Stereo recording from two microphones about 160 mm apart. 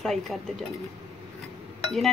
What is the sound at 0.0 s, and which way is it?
Speech, centre (ahead or behind).